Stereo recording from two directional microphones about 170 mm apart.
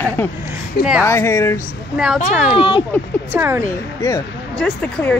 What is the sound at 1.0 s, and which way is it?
Speech, 15° left (ahead or behind).